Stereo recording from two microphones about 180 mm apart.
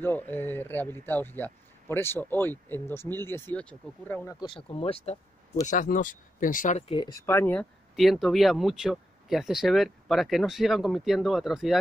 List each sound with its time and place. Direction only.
0.0 s speech: 10° left (ahead or behind)
4.4 s speech: 30° left (ahead or behind); by 6.8 s 45° left (ahead or behind)
6.9 s speech: 25° left (ahead or behind)
7.9 s speech: centre (ahead or behind)